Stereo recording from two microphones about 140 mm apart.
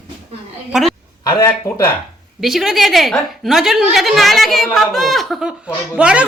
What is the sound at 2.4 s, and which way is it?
A woman's voice, centre (ahead or behind).